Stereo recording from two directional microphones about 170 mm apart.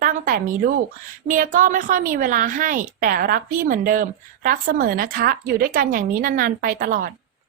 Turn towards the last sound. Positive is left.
turn(degrees=-55)  # may be behind; listen again after turning